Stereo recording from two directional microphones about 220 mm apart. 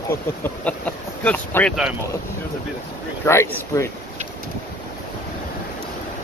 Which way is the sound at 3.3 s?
10° left (ahead or behind).